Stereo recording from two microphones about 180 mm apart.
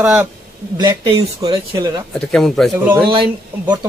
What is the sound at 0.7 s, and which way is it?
Speech, 25° right (ahead or behind).